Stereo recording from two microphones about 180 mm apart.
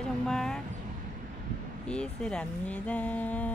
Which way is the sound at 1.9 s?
5° left (ahead or behind).